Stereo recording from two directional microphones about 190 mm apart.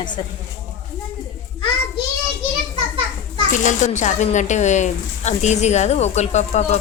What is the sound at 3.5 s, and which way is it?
A woman's voice, 40° left (ahead or behind).